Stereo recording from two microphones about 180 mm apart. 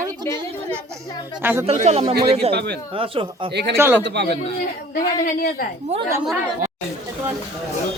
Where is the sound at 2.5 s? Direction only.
70° right (ahead or behind).